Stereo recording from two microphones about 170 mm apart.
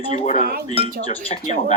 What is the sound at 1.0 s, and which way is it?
Speech, 35° left (ahead or behind).